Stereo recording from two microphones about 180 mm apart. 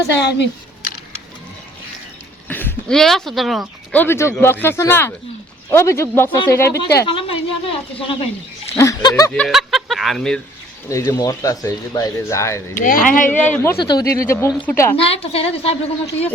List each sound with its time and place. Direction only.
0.2 s speech: 70° left (ahead or behind)
2.5 s speech: 10° left (ahead or behind)
4.0 s speech: 15° left (ahead or behind)
6.7 s a woman's voice: 65° left (ahead or behind)
7.0 s speech: 30° left (ahead or behind)
8.8 s speech: 20° left (ahead or behind)
9.3 s speech: centre (ahead or behind)
10.8 s speech: 15° left (ahead or behind)
12.8 s speech: 45° left (ahead or behind)
13.3 s speech: 10° left (ahead or behind)
15.0 s a woman's voice: 35° left (ahead or behind)